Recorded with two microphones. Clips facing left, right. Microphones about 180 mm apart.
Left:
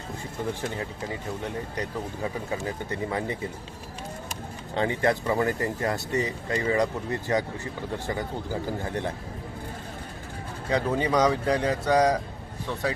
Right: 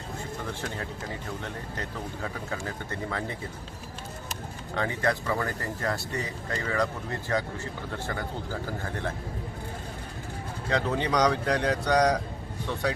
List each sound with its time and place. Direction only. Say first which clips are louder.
1.7 s speech: left 4 dB; 15° left (ahead or behind)
4.7 s speech: left 3 dB; 20° left (ahead or behind)
10.7 s speech: left 2 dB; 10° left (ahead or behind)